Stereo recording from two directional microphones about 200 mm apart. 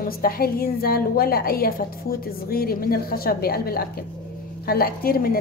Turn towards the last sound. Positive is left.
turn(degrees=50)  # may be behind; listen again after turning